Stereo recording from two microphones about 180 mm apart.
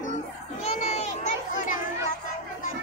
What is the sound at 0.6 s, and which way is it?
Children playing, 40° left (ahead or behind).